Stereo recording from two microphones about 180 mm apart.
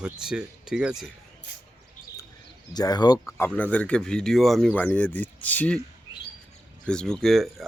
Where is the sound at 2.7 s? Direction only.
20° left (ahead or behind).